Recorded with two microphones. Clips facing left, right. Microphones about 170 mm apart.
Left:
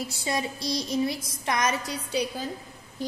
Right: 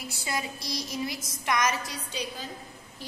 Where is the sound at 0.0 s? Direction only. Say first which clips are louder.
Left 4 dB; 25° left (ahead or behind).